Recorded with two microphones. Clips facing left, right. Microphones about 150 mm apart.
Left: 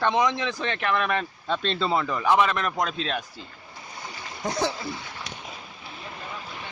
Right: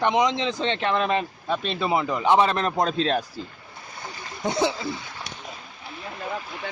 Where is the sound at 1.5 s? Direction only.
10° right (ahead or behind); by 3.2 s 35° right (ahead or behind).